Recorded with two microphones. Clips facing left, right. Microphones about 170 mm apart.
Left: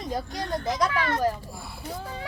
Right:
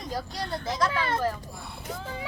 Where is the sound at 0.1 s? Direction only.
20° left (ahead or behind).